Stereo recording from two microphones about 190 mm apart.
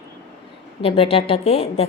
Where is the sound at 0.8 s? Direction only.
30° left (ahead or behind).